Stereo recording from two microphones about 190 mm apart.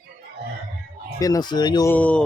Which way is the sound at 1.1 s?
20° left (ahead or behind).